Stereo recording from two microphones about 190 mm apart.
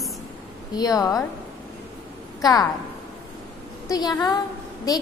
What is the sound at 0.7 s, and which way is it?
Speech, 20° left (ahead or behind).